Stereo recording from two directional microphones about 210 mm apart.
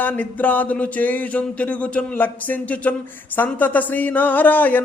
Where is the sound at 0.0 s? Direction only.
10° left (ahead or behind).